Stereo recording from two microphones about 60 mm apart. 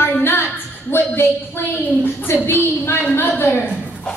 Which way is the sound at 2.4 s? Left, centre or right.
Left.